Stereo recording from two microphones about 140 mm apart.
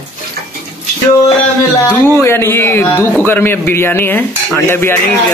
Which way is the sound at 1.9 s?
20° left (ahead or behind).